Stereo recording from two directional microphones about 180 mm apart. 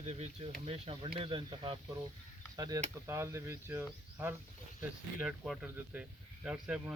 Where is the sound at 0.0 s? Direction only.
35° right (ahead or behind); by 3.8 s 15° right (ahead or behind).